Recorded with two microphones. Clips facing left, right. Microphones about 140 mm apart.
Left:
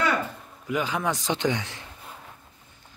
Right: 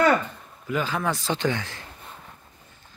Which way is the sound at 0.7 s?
15° left (ahead or behind).